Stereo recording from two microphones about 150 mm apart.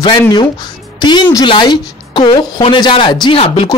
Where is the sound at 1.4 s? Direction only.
30° left (ahead or behind).